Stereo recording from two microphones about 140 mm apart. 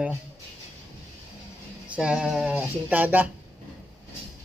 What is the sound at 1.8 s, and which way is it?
Speech, 10° right (ahead or behind).